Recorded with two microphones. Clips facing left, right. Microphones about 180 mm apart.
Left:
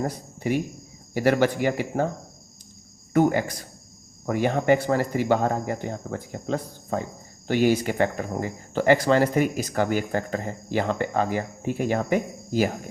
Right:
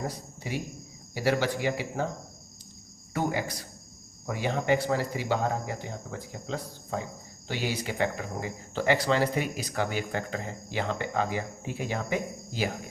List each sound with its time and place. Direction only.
1.1 s speech: 55° left (ahead or behind)
3.1 s speech: 50° left (ahead or behind)